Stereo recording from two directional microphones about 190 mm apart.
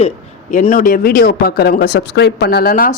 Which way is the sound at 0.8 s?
50° left (ahead or behind).